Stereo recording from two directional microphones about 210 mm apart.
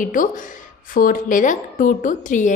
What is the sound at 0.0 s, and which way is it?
A woman's voice, 40° left (ahead or behind).